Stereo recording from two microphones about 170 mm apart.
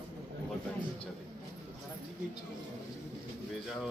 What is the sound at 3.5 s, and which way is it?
Pigeon, centre (ahead or behind).